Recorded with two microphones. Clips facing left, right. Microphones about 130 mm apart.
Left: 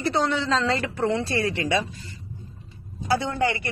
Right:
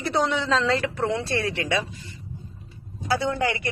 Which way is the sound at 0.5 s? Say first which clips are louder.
Right 1 dB; centre (ahead or behind).